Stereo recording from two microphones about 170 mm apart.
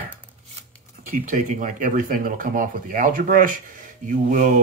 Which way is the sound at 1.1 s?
50° right (ahead or behind).